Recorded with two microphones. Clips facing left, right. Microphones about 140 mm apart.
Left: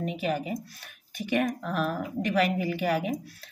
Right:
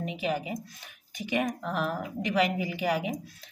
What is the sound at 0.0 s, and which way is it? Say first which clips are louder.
Speech: left 2 dB; 15° right (ahead or behind).